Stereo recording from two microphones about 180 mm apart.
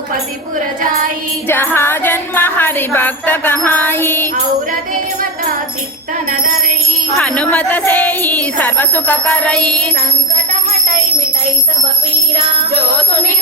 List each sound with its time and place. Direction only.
1.5 s music: 10° left (ahead or behind)
7.2 s speech: 5° left (ahead or behind)